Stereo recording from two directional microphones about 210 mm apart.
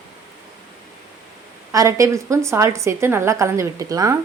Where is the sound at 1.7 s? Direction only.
15° right (ahead or behind).